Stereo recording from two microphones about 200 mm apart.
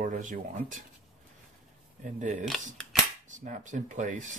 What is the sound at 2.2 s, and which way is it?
Speech, 40° right (ahead or behind).